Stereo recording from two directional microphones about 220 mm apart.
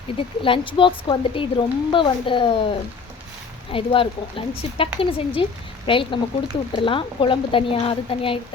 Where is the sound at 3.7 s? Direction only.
25° left (ahead or behind).